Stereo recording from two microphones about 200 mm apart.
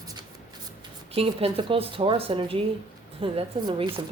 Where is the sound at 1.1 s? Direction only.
30° right (ahead or behind).